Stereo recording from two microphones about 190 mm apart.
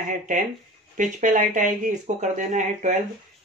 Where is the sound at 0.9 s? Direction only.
40° right (ahead or behind).